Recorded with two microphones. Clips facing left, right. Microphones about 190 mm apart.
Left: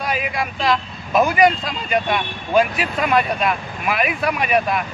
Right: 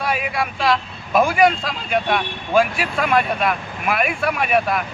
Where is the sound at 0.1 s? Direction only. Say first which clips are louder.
Right 1 dB; centre (ahead or behind).